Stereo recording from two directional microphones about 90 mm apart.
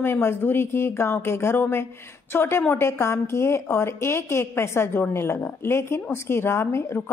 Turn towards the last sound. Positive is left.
turn(degrees=30)  # may be behind; listen again after turning